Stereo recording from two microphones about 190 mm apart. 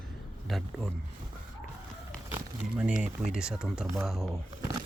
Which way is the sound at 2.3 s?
10° right (ahead or behind).